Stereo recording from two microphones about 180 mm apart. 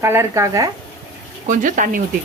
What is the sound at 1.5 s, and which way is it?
Speech, 45° right (ahead or behind).